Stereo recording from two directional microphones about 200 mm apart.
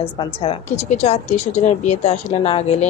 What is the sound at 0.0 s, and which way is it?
A woman's voice, 25° left (ahead or behind).